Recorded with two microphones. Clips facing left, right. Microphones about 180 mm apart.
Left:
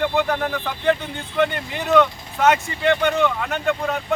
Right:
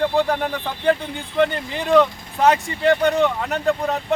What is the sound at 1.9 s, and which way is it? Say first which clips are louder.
Speech: right 1 dB; 30° right (ahead or behind).